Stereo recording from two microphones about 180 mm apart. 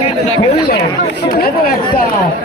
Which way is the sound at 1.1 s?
55° left (ahead or behind).